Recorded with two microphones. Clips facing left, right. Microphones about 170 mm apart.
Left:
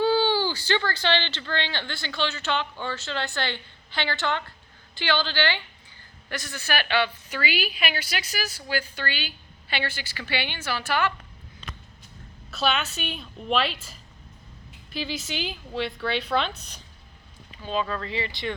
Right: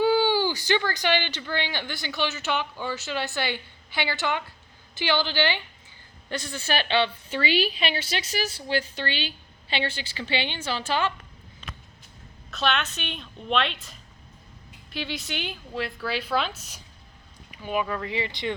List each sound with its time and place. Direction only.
0.0 s a woman's voice: 15° right (ahead or behind)
6.2 s a woman's voice: 25° right (ahead or behind)
12.5 s a woman's voice: 5° left (ahead or behind); by 18.5 s 20° right (ahead or behind)